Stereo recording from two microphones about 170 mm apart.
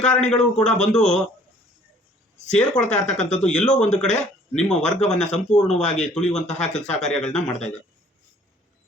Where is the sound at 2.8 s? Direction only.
45° left (ahead or behind).